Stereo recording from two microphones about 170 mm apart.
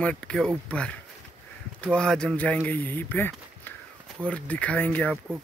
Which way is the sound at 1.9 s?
5° left (ahead or behind).